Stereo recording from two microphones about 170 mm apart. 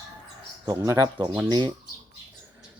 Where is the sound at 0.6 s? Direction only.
15° right (ahead or behind).